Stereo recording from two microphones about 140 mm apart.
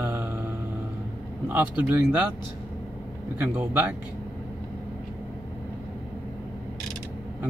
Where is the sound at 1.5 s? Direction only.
15° right (ahead or behind).